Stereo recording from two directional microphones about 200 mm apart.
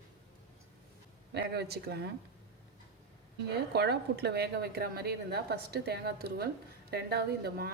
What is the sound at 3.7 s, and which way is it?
Speech, 55° right (ahead or behind).